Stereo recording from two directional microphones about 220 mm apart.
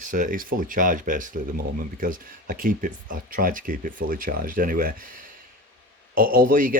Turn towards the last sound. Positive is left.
turn(degrees=-40)  # may be behind; listen again after turning